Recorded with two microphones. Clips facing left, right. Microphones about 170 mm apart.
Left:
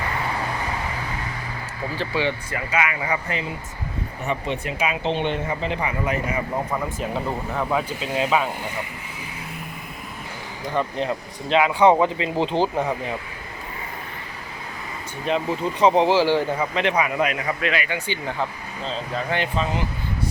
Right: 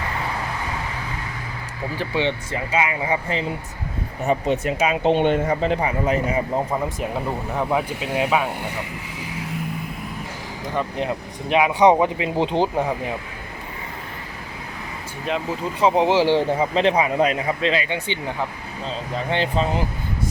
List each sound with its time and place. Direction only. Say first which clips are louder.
2.0 s a man's voice: right 1 dB; 20° right (ahead or behind)
4.3 s speech: right 6 dB; 45° right (ahead or behind)
7.5 s speech: right 2 dB; 15° right (ahead or behind)
10.8 s speech: even; 10° right (ahead or behind)
15.3 s speech: left 2 dB; 5° right (ahead or behind)
16.0 s a man's voice: right 1 dB; 20° right (ahead or behind)
19.3 s speech: right 4 dB; 30° right (ahead or behind)